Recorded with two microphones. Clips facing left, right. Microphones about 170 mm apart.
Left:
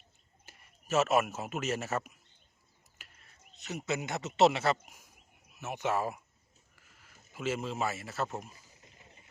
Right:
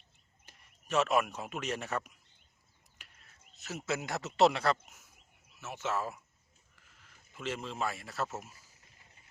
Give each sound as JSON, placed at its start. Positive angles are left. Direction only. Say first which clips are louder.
{"t": 0.4, "sound": "speech", "louder": "left 4 dB", "side_deg": 5}
{"t": 3.0, "sound": "a sound", "louder": "left 2 dB", "side_deg": 0}
{"t": 4.4, "sound": "speech", "louder": "left 1 dB", "side_deg": 0}
{"t": 5.5, "sound": "speech", "louder": "left 3 dB", "side_deg": 15}